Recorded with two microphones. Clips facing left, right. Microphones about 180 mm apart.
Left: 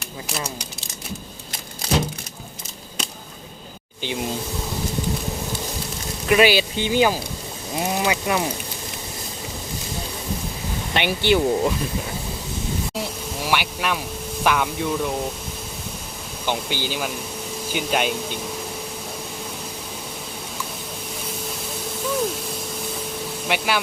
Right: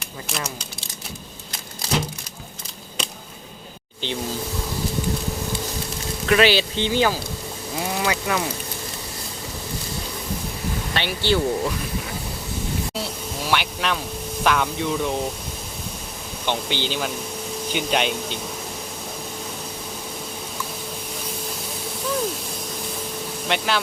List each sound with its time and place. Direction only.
4.0 s speech: 15° left (ahead or behind)
6.2 s speech: 10° left (ahead or behind)
10.9 s speech: 15° left (ahead or behind)
13.0 s a sound: 10° left (ahead or behind)
14.4 s speech: 5° left (ahead or behind)
16.5 s speech: 10° left (ahead or behind)
23.5 s speech: 10° left (ahead or behind)